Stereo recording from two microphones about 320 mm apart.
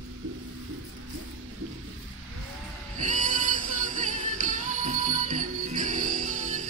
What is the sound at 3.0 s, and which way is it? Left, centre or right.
Music, right.